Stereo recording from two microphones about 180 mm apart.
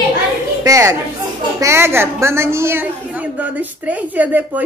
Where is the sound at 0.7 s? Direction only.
15° right (ahead or behind).